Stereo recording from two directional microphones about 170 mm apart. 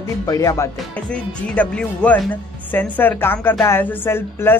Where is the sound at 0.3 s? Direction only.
20° left (ahead or behind).